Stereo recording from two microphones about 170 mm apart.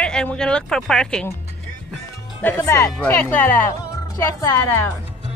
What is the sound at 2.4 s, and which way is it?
Speech, 15° left (ahead or behind).